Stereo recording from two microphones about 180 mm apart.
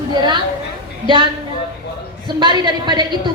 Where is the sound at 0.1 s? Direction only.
25° right (ahead or behind).